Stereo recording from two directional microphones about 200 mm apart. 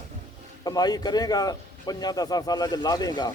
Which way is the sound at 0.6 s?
20° left (ahead or behind).